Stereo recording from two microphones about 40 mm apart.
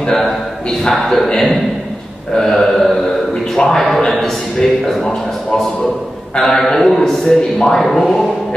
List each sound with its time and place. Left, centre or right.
0.1 s a man's voice: centre